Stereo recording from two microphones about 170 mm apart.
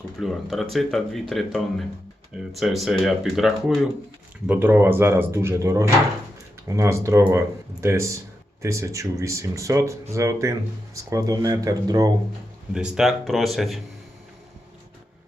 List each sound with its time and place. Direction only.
0.2 s speech: centre (ahead or behind)
4.4 s speech: 10° right (ahead or behind)
12.7 s speech: 5° right (ahead or behind)